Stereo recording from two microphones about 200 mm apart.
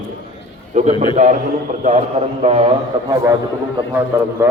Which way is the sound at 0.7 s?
35° right (ahead or behind).